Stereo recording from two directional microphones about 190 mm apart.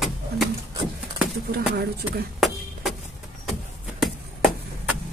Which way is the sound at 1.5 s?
55° right (ahead or behind).